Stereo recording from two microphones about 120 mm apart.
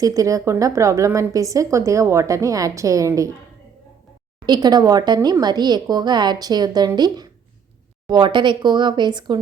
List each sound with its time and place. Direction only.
0.0 s a woman's voice: 30° right (ahead or behind)
4.4 s speech: 35° right (ahead or behind)